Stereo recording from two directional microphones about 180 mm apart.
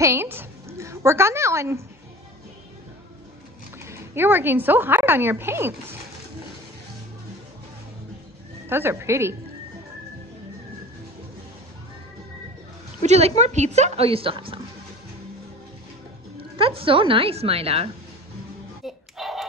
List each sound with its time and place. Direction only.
0.0 s a woman's voice: 15° right (ahead or behind)
3.8 s a woman's voice: 15° right (ahead or behind)
8.6 s a woman's voice: 15° right (ahead or behind)
13.0 s a woman's voice: 35° right (ahead or behind)
16.5 s a woman's voice: 30° right (ahead or behind)
18.9 s music: centre (ahead or behind)